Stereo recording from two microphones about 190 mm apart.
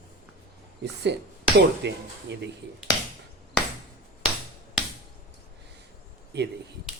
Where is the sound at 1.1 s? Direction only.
65° right (ahead or behind).